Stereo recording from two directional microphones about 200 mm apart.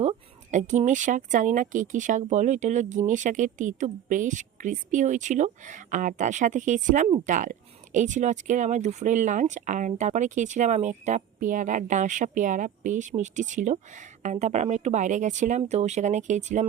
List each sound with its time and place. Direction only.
0.0 s speech: 35° right (ahead or behind)